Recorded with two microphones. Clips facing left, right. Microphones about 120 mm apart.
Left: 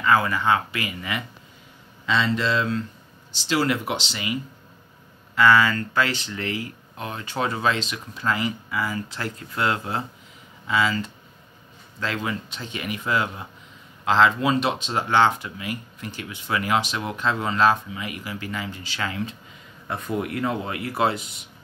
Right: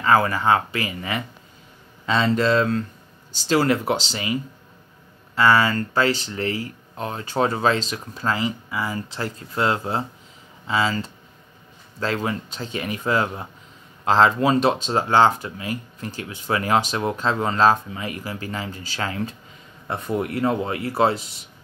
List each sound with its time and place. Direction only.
0.0 s speech: 35° right (ahead or behind)